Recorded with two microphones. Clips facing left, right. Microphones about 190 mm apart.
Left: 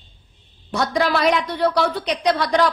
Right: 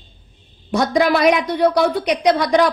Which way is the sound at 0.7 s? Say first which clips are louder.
Right 4 dB; 15° right (ahead or behind).